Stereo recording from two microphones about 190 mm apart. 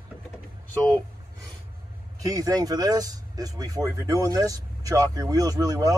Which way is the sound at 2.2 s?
20° right (ahead or behind).